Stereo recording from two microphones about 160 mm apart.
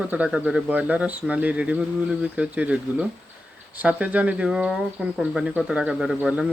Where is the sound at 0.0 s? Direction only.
10° right (ahead or behind).